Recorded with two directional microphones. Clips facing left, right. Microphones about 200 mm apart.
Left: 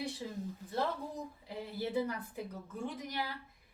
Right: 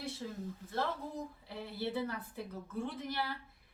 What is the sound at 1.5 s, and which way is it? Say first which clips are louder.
Speech: left 2 dB; 15° left (ahead or behind).